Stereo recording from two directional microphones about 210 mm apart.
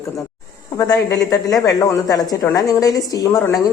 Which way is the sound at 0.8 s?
15° left (ahead or behind).